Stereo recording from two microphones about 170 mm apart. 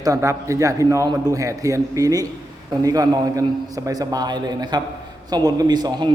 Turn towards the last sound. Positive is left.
turn(degrees=-25)  # may be behind; listen again after turning